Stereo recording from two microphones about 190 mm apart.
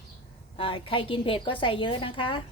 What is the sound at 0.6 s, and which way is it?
A woman's voice, 30° left (ahead or behind).